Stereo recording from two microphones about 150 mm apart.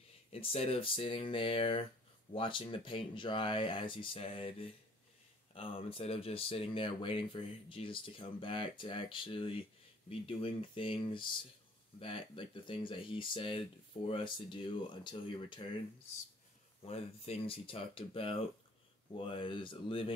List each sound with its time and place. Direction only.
0.3 s speech: 40° left (ahead or behind)
16.8 s speech: 40° left (ahead or behind)